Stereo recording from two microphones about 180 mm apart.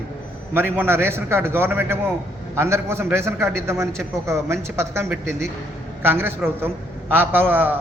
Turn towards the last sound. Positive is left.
turn(degrees=-10)  # may be behind; listen again after turning